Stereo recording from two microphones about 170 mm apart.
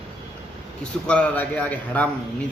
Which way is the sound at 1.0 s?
5° left (ahead or behind).